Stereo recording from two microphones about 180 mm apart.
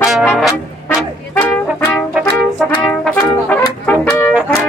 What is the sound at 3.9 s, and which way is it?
Music, 10° left (ahead or behind).